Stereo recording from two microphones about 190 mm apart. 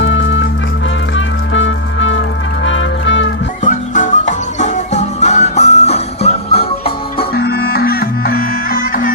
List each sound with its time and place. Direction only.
0.0 s music: 80° left
3.6 s music: 40° left (ahead or behind)
7.3 s music: 55° left (ahead or behind)